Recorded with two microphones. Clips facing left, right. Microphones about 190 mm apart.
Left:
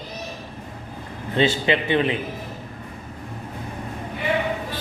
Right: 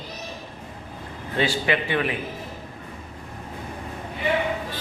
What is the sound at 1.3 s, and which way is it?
Mantra, 25° left (ahead or behind).